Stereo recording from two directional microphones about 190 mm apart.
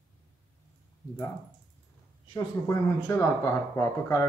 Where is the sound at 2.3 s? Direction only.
15° left (ahead or behind).